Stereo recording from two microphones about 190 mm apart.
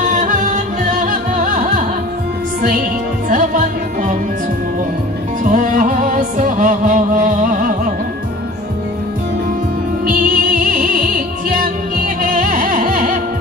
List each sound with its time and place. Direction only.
0.0 s music: 40° right (ahead or behind)
3.3 s music: 45° right (ahead or behind)
5.4 s music: 45° right (ahead or behind)
10.0 s music: 45° right (ahead or behind)